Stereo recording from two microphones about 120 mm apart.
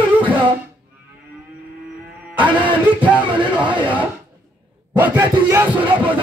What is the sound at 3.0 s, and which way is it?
Music, 10° right (ahead or behind).